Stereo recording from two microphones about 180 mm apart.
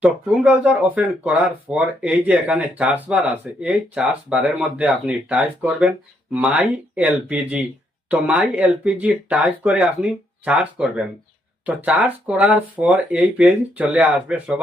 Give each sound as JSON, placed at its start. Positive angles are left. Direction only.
{"t": 0.0, "sound": "speech", "side_deg": -5}